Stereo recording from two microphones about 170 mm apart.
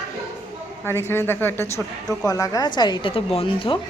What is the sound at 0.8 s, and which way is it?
A woman's voice, 15° left (ahead or behind).